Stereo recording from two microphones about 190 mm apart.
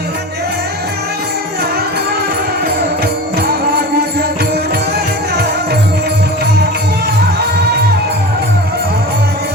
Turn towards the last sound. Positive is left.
turn(degrees=-55)  # may be behind; listen again after turning